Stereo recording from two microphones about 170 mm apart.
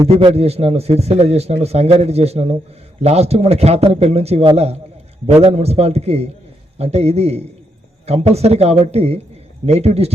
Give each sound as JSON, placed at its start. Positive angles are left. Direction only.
{"t": 0.3, "sound": "a man's voice", "side_deg": -35}